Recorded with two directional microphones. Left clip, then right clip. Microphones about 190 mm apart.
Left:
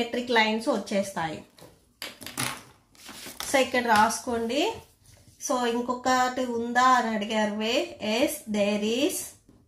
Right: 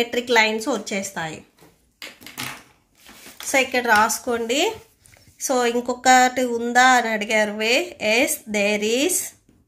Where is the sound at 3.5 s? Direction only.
30° right (ahead or behind).